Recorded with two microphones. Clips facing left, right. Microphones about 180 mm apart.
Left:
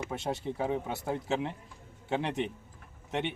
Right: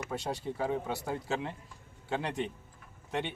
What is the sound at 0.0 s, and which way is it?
Speech, 20° left (ahead or behind).